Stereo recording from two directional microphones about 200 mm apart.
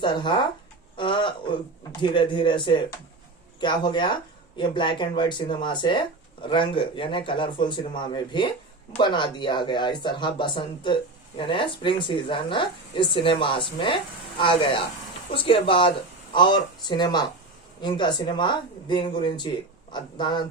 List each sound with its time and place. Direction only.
0.0 s speech: 20° left (ahead or behind)
0.9 s a sound: 25° left (ahead or behind)
1.9 s speech: 25° left (ahead or behind)